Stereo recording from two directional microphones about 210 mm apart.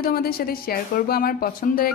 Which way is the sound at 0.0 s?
45° left (ahead or behind).